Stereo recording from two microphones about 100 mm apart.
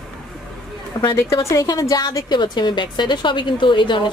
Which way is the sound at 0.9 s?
50° left (ahead or behind).